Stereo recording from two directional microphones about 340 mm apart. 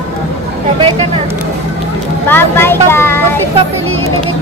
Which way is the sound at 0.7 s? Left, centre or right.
Centre.